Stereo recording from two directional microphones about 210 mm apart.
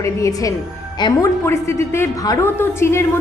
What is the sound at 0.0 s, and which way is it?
A woman's voice, 15° left (ahead or behind).